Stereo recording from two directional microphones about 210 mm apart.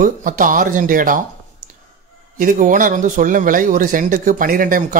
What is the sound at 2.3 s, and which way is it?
Speech, 40° right (ahead or behind).